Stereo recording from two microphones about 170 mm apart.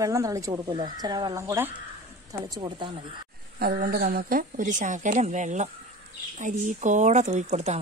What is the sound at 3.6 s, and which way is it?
Speech, 60° right (ahead or behind).